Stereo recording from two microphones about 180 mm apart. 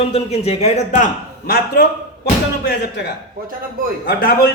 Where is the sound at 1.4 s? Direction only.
60° left (ahead or behind).